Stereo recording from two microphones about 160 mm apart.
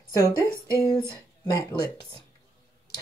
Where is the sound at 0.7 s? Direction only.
20° left (ahead or behind).